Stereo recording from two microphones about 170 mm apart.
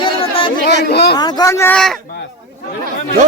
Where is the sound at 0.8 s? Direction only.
70° left (ahead or behind).